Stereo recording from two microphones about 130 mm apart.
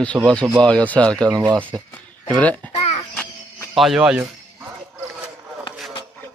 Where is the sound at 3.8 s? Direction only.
5° right (ahead or behind).